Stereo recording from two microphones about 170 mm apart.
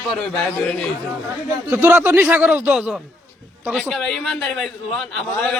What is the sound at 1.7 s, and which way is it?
A man's voice, 10° right (ahead or behind).